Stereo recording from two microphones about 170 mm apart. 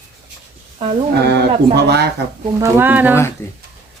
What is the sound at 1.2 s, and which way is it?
Speech, 75° right (ahead or behind).